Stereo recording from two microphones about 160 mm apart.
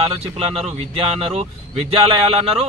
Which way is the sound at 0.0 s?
40° right (ahead or behind).